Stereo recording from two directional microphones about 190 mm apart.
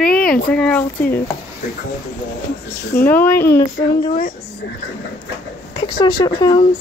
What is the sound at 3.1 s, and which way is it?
Speech, 10° left (ahead or behind).